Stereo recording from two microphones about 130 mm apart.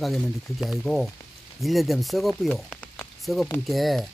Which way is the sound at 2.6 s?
10° left (ahead or behind).